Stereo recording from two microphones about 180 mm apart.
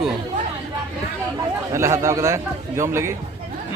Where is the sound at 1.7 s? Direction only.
15° right (ahead or behind).